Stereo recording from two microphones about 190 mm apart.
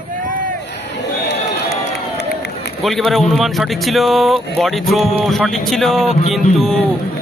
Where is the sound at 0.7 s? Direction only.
65° left (ahead or behind).